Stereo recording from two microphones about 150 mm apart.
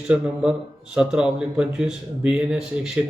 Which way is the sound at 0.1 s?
5° right (ahead or behind).